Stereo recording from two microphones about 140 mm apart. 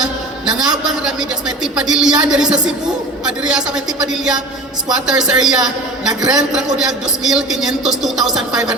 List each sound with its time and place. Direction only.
0.5 s a man's voice: 5° right (ahead or behind)